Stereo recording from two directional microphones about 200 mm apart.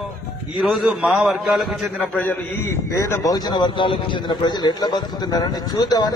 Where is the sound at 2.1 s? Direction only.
10° left (ahead or behind).